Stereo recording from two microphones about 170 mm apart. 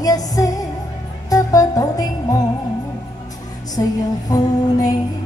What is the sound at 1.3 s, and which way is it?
Speech, 20° left (ahead or behind).